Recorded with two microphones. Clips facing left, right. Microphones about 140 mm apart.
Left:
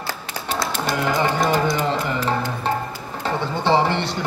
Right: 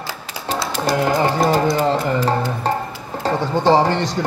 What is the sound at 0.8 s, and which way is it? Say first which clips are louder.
Music: right 5 dB; 40° right (ahead or behind).